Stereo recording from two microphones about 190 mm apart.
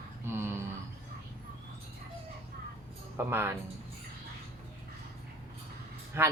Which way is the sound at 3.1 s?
10° right (ahead or behind).